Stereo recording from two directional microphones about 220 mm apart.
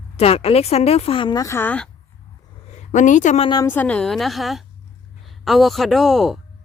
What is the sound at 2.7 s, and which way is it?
Speech, 35° left (ahead or behind).